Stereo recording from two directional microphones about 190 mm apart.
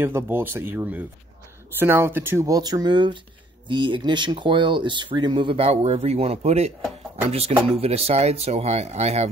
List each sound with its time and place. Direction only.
0.0 s speech: 10° right (ahead or behind); by 9.3 s 35° right (ahead or behind)